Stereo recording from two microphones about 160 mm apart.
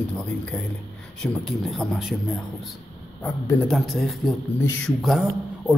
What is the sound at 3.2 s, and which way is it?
Speech, 15° left (ahead or behind).